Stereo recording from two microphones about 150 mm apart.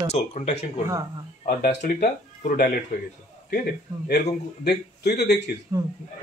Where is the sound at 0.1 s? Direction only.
50° left (ahead or behind).